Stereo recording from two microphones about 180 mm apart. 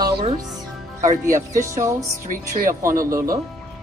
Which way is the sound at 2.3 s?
50° right (ahead or behind).